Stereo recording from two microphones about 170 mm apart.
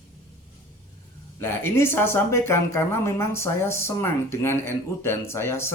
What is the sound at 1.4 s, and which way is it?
Speech, 15° left (ahead or behind).